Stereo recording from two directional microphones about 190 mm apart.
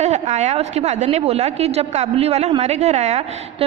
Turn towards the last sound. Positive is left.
turn(degrees=-35)  # may be behind; listen again after turning